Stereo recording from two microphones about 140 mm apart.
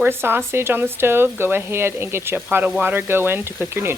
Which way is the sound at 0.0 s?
15° right (ahead or behind).